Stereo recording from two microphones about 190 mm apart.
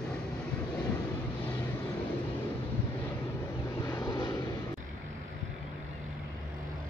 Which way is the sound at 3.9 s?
20° left (ahead or behind).